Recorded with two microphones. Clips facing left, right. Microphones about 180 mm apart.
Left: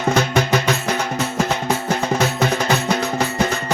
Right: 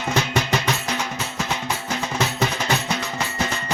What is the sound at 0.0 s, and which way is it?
Music, 45° left (ahead or behind).